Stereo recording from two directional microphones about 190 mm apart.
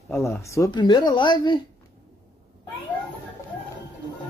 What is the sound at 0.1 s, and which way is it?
Speech, 15° left (ahead or behind).